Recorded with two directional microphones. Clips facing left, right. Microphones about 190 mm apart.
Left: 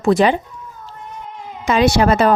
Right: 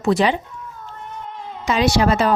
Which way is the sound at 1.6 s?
55° left (ahead or behind).